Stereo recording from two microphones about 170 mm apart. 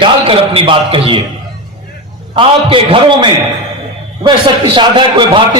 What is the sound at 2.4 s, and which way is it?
Speech, 30° right (ahead or behind).